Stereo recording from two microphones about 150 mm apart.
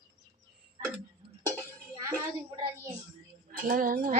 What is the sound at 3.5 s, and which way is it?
Speech, 70° right (ahead or behind).